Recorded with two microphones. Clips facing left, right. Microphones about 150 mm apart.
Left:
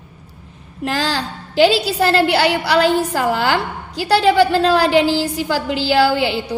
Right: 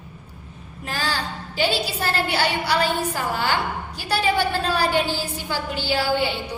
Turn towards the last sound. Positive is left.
turn(degrees=85)